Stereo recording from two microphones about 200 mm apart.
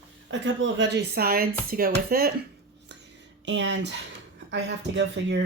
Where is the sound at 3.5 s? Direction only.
65° right (ahead or behind).